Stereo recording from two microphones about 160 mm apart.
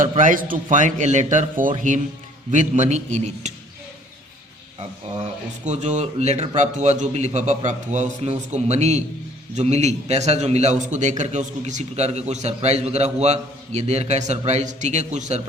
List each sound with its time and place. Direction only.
0.2 s a man's voice: 55° right (ahead or behind)
5.6 s a man's voice: 45° right (ahead or behind)
6.7 s a man's voice: 50° right (ahead or behind)